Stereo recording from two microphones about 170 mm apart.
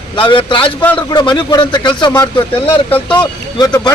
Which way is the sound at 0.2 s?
30° left (ahead or behind).